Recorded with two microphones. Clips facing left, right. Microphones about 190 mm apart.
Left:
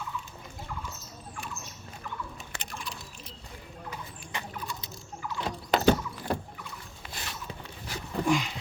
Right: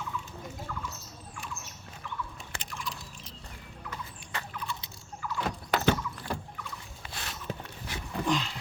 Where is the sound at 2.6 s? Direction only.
60° left (ahead or behind).